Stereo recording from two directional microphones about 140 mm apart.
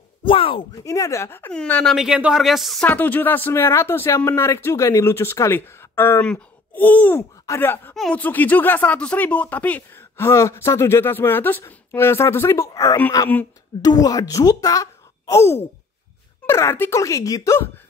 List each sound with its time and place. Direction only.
0.2 s speech: 40° left (ahead or behind)
0.8 s speech: 25° left (ahead or behind)
1.5 s speech: 5° left (ahead or behind)
2.0 s speech: 5° right (ahead or behind)
2.9 s speech: 10° left (ahead or behind)
7.9 s speech: centre (ahead or behind)
8.2 s speech: 10° left (ahead or behind)